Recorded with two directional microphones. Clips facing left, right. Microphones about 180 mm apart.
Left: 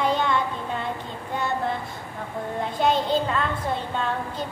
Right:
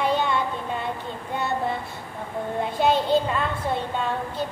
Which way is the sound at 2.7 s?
10° right (ahead or behind).